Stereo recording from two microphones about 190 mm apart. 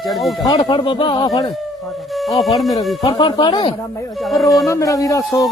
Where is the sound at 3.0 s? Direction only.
20° left (ahead or behind).